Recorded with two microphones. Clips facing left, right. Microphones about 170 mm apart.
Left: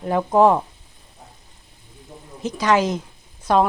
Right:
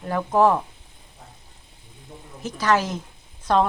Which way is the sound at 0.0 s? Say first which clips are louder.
Left 3 dB; 20° left (ahead or behind).